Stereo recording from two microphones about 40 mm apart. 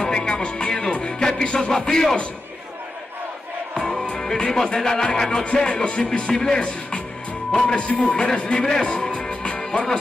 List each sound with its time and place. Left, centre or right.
0.0 s music: left
3.7 s music: left
7.6 s music: left
9.6 s music: centre